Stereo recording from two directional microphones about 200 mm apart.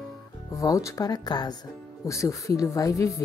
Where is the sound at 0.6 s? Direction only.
15° left (ahead or behind).